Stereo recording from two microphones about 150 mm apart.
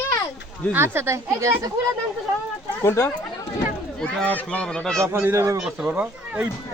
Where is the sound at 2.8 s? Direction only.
20° left (ahead or behind).